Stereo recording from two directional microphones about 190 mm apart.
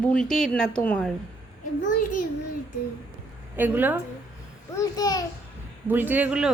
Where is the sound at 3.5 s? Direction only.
10° right (ahead or behind).